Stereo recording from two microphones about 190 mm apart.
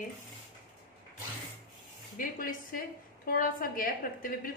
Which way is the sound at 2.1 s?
45° left (ahead or behind).